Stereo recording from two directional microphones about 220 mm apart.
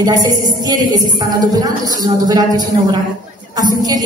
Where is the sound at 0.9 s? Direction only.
15° right (ahead or behind).